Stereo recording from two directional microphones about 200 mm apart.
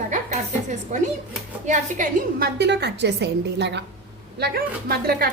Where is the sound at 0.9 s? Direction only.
35° right (ahead or behind).